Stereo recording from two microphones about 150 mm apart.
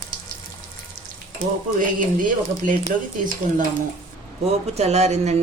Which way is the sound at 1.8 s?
60° right (ahead or behind).